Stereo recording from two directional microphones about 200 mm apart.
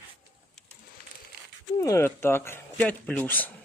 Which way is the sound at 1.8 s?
15° left (ahead or behind).